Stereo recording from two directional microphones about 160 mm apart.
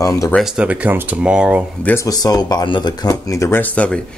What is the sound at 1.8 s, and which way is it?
Speech, 20° left (ahead or behind).